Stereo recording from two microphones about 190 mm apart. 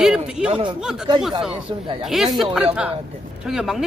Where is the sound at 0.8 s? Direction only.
5° right (ahead or behind).